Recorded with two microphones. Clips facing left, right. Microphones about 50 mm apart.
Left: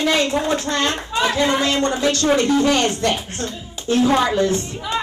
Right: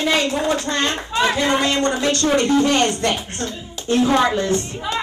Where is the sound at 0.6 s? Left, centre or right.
Right.